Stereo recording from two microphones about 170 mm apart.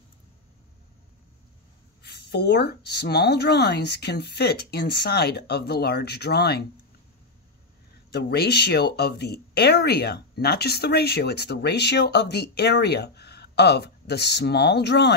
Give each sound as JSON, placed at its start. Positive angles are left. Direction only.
{"t": 2.0, "sound": "speech", "side_deg": 75}
{"t": 8.1, "sound": "speech", "side_deg": 75}